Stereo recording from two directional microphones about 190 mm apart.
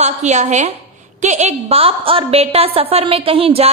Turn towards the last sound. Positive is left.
turn(degrees=-30)  # may be behind; listen again after turning